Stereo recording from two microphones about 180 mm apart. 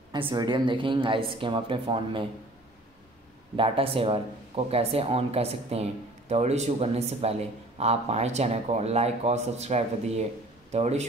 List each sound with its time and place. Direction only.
0.1 s a woman's voice: 25° right (ahead or behind)
3.5 s speech: 30° right (ahead or behind)